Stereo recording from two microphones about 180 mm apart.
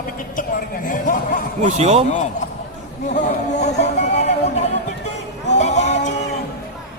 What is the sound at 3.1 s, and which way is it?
Speech, 40° left (ahead or behind).